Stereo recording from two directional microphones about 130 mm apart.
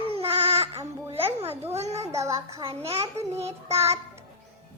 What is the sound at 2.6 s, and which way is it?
Speech, 50° right (ahead or behind).